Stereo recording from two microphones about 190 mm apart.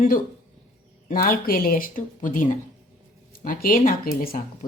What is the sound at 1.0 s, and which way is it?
Speech, 45° left (ahead or behind).